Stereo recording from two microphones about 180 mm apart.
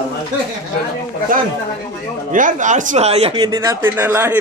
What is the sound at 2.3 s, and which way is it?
Speech, 45° right (ahead or behind).